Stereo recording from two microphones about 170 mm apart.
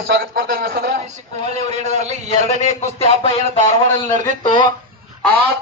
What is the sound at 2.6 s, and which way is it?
A man's voice, 35° left (ahead or behind).